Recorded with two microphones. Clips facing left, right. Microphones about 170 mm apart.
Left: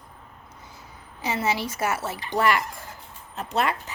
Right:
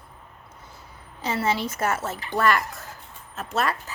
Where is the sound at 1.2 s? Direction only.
10° left (ahead or behind).